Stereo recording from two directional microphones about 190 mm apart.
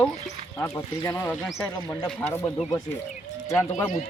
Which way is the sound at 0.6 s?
15° left (ahead or behind).